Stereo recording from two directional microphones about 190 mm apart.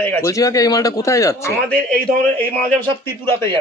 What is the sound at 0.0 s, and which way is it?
Speech, 15° left (ahead or behind).